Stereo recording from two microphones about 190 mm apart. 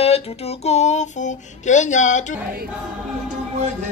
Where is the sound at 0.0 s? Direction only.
30° left (ahead or behind).